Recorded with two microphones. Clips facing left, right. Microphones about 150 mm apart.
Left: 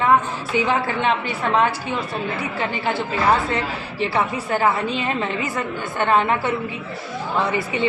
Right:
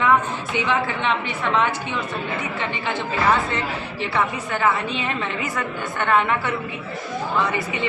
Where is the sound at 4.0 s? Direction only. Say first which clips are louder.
Left 2 dB; 35° left (ahead or behind).